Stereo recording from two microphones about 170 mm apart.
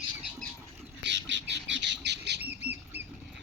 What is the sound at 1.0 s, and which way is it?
Squawk, 90° right.